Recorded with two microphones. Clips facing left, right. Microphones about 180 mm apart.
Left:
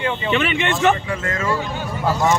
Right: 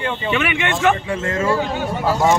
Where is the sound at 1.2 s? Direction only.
30° right (ahead or behind).